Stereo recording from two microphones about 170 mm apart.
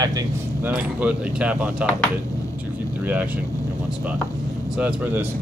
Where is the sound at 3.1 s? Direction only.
10° right (ahead or behind).